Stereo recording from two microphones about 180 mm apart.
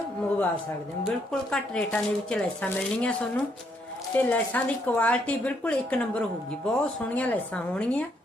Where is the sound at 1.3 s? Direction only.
5° left (ahead or behind).